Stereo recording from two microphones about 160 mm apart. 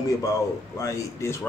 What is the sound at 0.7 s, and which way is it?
Speech, 20° left (ahead or behind).